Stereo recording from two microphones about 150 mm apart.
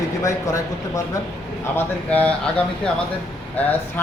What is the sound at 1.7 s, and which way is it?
Speech, 10° left (ahead or behind).